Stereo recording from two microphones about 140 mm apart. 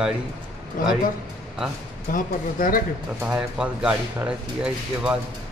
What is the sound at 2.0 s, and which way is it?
Speech, 75° left (ahead or behind).